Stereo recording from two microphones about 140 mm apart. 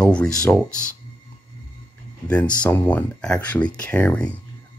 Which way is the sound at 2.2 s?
10° left (ahead or behind).